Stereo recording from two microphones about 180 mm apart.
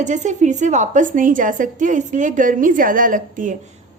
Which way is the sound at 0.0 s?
40° right (ahead or behind).